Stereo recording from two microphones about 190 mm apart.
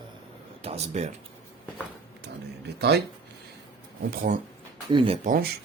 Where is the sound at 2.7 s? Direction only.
60° right (ahead or behind).